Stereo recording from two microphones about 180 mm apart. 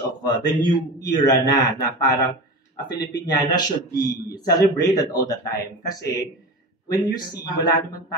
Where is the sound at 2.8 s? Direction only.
25° left (ahead or behind).